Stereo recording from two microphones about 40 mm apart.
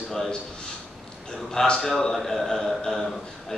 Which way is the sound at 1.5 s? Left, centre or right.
Centre.